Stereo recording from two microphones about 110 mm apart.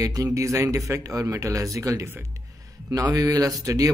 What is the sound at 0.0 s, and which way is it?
A man's voice, 30° right (ahead or behind).